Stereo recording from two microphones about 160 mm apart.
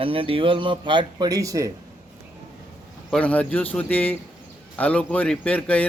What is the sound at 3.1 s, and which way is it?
Speech, 10° left (ahead or behind).